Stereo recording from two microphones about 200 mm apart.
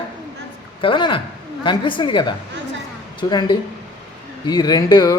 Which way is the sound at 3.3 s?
20° left (ahead or behind).